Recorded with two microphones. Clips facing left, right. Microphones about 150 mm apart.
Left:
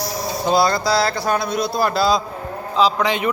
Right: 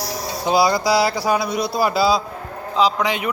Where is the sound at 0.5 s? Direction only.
10° right (ahead or behind).